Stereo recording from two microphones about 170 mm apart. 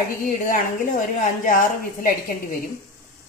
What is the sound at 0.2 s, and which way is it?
A woman's voice, 55° left (ahead or behind).